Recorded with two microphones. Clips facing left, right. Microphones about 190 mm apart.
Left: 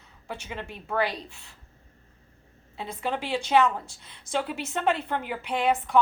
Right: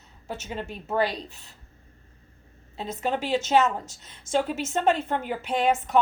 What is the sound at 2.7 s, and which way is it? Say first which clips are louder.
A woman's voice: right 3 dB; 45° right (ahead or behind).